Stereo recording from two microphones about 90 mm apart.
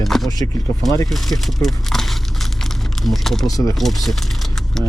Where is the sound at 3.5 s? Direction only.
40° left (ahead or behind).